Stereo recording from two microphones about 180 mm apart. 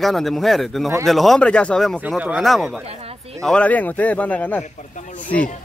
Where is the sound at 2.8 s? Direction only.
35° right (ahead or behind).